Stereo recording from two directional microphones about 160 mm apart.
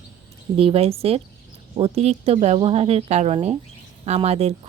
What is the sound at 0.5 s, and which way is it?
A woman's voice, 35° right (ahead or behind).